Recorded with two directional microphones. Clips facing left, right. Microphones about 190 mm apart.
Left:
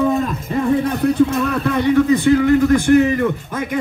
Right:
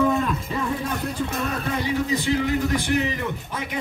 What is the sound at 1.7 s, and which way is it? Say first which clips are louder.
A man's voice: left 11 dB; 55° left (ahead or behind).